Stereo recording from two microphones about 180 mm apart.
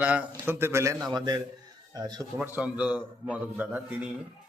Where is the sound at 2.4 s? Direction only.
5° right (ahead or behind).